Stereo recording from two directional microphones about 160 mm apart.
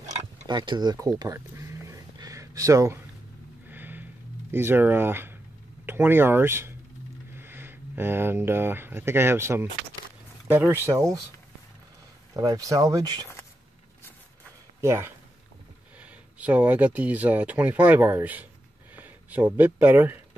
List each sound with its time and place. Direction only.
0.0 s tick-tock: 45° right (ahead or behind)
0.5 s a sound: 25° right (ahead or behind)
5.9 s speech: 15° right (ahead or behind)
12.4 s speech: 20° right (ahead or behind)
14.8 s speech: 15° right (ahead or behind)